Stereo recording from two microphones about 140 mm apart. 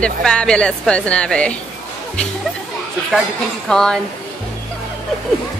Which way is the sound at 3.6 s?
5° left (ahead or behind).